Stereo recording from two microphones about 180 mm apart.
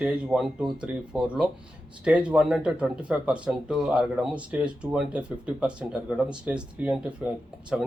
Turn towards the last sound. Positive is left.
turn(degrees=-5)  # may be behind; listen again after turning